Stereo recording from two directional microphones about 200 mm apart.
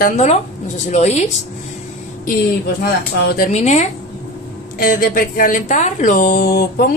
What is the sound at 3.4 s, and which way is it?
Speech, 35° left (ahead or behind).